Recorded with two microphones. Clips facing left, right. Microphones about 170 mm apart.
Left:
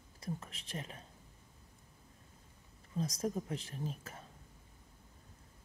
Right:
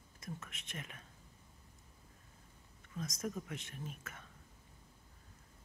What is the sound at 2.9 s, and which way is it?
Speech, 30° left (ahead or behind).